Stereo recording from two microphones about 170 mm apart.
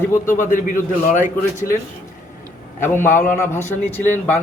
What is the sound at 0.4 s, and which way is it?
Speech, 50° left (ahead or behind).